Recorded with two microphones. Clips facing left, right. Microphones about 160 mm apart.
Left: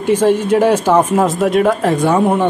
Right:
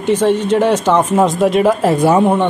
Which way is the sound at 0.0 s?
10° left (ahead or behind).